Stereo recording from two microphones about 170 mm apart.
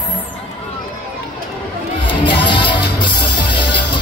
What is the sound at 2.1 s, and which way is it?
Music, 30° left (ahead or behind).